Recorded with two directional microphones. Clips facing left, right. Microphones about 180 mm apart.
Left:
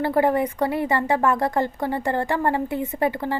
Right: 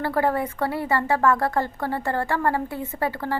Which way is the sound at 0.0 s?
20° left (ahead or behind).